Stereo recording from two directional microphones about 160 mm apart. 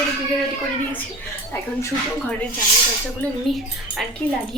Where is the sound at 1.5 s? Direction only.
15° left (ahead or behind).